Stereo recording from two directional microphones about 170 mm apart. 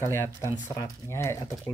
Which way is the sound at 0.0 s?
15° left (ahead or behind).